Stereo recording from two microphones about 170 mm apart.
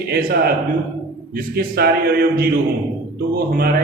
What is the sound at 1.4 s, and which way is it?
A man's voice, 65° right (ahead or behind).